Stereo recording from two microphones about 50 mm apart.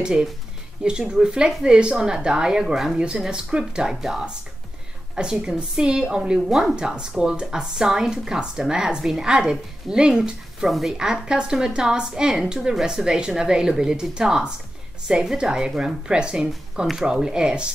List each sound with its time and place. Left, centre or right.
0.0 s speech: centre